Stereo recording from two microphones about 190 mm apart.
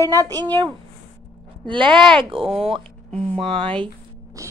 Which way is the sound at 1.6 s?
25° right (ahead or behind).